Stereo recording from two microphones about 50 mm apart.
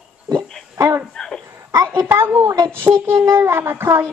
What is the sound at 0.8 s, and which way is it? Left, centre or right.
Speech, right.